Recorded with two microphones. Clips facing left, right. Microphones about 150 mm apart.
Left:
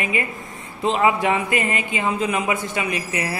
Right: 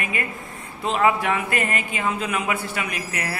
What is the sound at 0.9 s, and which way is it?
A man's voice, 10° left (ahead or behind).